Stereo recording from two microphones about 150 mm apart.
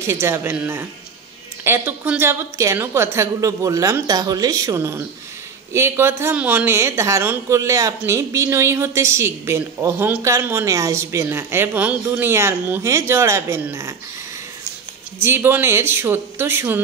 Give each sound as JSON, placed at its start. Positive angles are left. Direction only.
{"t": 0.0, "sound": "a woman's voice", "side_deg": -15}
{"t": 15.1, "sound": "a woman's voice", "side_deg": -15}